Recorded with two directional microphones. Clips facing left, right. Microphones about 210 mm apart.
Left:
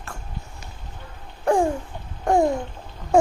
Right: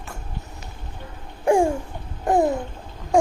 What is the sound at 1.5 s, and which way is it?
Babbling, 10° right (ahead or behind).